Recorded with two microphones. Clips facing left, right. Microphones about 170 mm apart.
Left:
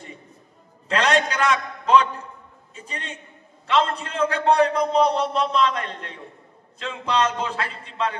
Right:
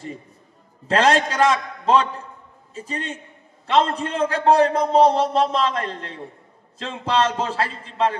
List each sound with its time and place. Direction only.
0.8 s a man's voice: 35° right (ahead or behind)
3.6 s a man's voice: 35° right (ahead or behind)